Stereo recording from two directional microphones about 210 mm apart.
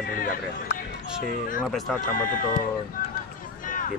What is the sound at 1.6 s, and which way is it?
Speech, centre (ahead or behind).